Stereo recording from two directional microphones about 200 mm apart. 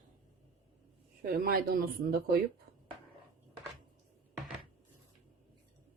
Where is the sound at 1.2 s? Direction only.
50° right (ahead or behind).